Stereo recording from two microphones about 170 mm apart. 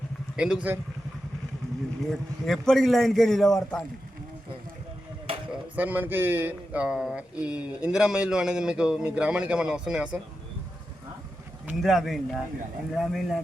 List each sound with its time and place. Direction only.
0.3 s speech: 5° right (ahead or behind)
2.0 s speech: centre (ahead or behind)
5.3 s a sound: 35° right (ahead or behind)
5.7 s speech: 10° right (ahead or behind)
11.8 s speech: centre (ahead or behind)